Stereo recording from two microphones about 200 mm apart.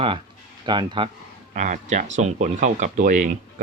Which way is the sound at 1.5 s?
40° right (ahead or behind).